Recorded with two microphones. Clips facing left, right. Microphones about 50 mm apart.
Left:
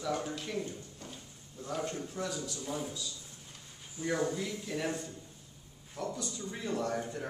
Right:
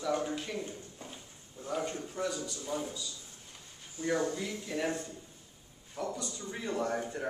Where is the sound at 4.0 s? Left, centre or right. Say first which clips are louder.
Right 2 dB; centre.